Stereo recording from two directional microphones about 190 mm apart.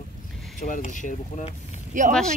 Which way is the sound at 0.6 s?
45° left (ahead or behind).